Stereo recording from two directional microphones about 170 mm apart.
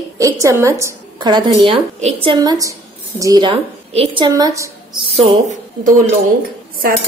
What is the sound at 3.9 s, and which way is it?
Speech, 35° right (ahead or behind).